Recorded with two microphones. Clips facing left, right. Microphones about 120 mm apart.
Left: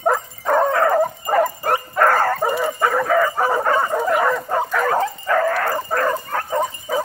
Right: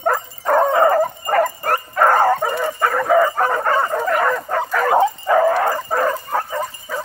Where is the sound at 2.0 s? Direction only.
10° right (ahead or behind).